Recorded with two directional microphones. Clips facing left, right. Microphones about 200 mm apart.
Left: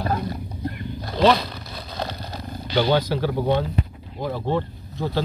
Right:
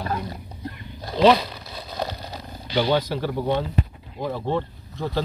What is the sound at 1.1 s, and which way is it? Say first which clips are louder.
Speech: right 1 dB; 10° right (ahead or behind).